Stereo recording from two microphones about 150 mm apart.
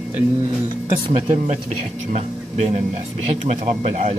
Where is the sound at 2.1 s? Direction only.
50° right (ahead or behind).